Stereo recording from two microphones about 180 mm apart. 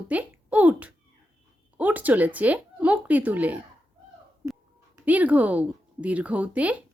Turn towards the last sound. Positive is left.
turn(degrees=-10)  # may be behind; listen again after turning